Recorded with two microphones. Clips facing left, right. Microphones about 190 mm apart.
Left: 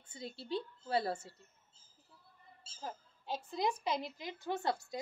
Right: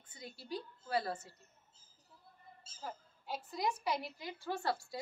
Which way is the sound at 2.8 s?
25° left (ahead or behind).